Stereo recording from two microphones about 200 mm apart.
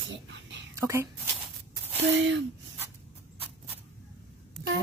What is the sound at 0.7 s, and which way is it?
Speech, 15° right (ahead or behind).